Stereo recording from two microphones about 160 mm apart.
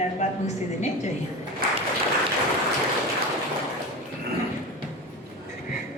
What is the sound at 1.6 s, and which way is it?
Applause, 65° right (ahead or behind).